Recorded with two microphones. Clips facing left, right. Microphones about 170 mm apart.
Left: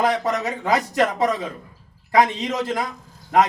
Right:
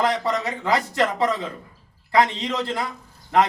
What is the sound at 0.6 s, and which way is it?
A man's voice, 20° left (ahead or behind).